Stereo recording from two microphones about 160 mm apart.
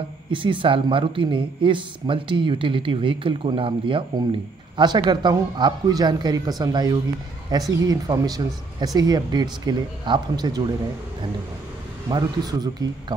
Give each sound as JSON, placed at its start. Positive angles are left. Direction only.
{"t": 0.3, "sound": "speech", "side_deg": -30}
{"t": 12.1, "sound": "speech", "side_deg": -25}